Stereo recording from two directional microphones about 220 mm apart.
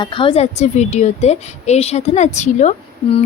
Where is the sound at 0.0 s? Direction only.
20° left (ahead or behind).